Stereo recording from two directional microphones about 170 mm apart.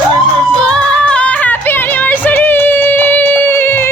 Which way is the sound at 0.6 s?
5° left (ahead or behind).